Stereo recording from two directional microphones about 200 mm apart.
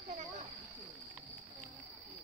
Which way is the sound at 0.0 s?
40° right (ahead or behind).